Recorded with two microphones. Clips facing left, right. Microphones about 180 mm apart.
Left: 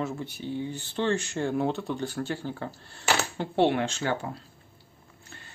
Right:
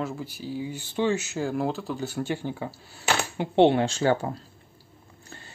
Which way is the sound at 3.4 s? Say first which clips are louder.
Right 6 dB; 25° right (ahead or behind).